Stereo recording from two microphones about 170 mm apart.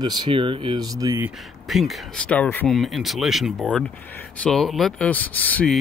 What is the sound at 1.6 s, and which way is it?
Speech, centre (ahead or behind).